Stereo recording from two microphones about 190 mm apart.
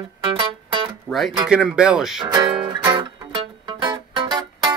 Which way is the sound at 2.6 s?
25° right (ahead or behind).